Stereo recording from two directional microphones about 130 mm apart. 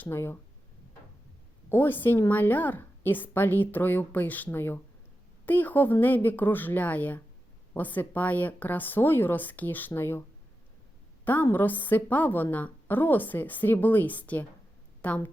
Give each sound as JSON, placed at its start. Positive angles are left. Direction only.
{"t": 0.0, "sound": "speech", "side_deg": 20}
{"t": 1.7, "sound": "a woman's voice", "side_deg": 15}
{"t": 11.3, "sound": "a woman's voice", "side_deg": 15}